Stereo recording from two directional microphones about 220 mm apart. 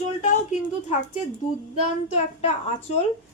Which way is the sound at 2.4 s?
30° left (ahead or behind).